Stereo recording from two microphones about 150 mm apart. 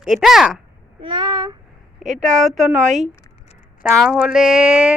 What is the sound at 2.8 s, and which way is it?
Speech, 50° right (ahead or behind).